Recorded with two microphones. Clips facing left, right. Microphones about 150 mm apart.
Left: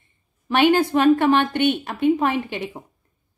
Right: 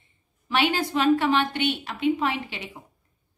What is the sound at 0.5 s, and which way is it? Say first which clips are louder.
A woman's voice: left 7 dB; 50° left (ahead or behind).